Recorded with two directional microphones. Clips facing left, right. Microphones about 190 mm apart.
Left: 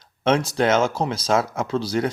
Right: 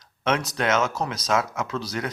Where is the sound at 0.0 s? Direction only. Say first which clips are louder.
Left 5 dB; 30° left (ahead or behind).